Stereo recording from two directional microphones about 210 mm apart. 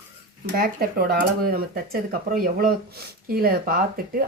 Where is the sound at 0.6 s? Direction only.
45° right (ahead or behind).